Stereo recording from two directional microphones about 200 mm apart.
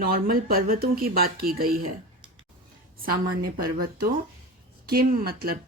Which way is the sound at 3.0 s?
45° right (ahead or behind).